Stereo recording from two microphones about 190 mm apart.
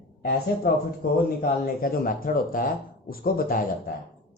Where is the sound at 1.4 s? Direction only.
50° left (ahead or behind).